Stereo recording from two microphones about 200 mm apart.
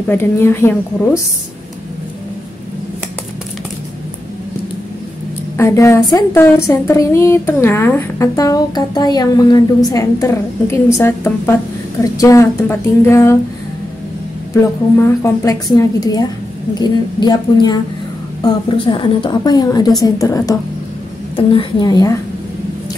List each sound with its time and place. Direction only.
0.1 s a woman's voice: 10° left (ahead or behind)
5.6 s a woman's voice: 15° left (ahead or behind)
14.5 s a woman's voice: 15° left (ahead or behind)
21.4 s a woman's voice: 25° left (ahead or behind)